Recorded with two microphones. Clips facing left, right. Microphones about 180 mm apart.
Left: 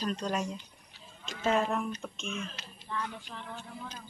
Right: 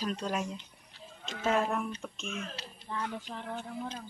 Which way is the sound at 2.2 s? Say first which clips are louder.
Left 1 dB; 45° right (ahead or behind).